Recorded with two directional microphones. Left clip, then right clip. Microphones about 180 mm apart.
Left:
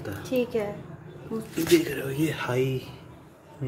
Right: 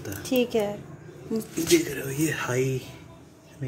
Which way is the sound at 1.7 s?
5° right (ahead or behind).